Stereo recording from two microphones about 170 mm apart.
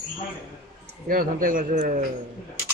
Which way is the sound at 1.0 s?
55° right (ahead or behind).